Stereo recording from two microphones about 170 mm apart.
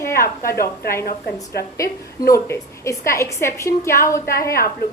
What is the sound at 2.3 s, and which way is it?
A woman's voice, 20° left (ahead or behind).